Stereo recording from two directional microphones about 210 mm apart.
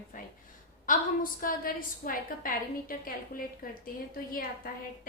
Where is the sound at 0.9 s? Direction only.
40° left (ahead or behind).